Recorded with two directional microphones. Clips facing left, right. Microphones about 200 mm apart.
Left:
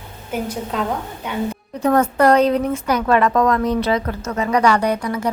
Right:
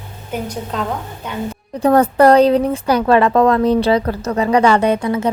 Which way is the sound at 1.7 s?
35° right (ahead or behind).